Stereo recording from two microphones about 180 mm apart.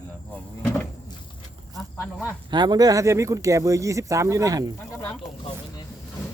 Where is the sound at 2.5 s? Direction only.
25° right (ahead or behind).